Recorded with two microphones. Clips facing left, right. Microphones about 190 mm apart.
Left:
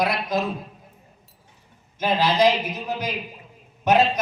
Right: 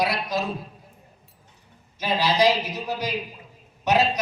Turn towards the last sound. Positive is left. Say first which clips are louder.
# left 3 dB
turn(degrees=50)  # may be behind; listen again after turning